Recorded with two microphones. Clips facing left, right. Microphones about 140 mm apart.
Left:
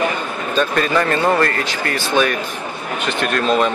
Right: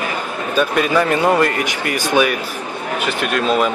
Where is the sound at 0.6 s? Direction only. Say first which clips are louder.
Right 1 dB; 10° right (ahead or behind).